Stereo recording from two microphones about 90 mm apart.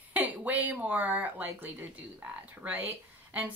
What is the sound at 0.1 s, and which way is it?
Speech, 20° right (ahead or behind).